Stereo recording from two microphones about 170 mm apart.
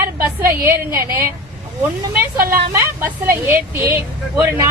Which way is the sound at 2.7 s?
10° right (ahead or behind).